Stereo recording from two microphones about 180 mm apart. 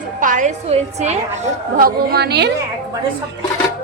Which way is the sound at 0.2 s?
45° right (ahead or behind).